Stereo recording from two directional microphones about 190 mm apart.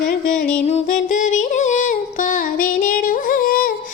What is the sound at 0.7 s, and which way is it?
Music, 40° left (ahead or behind).